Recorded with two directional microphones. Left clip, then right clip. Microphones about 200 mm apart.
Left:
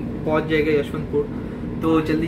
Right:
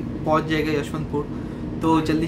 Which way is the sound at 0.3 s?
15° right (ahead or behind).